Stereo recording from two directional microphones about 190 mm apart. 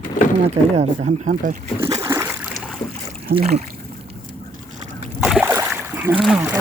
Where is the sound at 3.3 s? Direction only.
55° right (ahead or behind).